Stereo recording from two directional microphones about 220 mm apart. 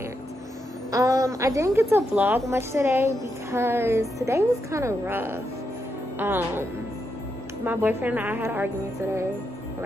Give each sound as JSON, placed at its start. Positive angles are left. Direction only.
{"t": 0.9, "sound": "a woman's voice", "side_deg": -15}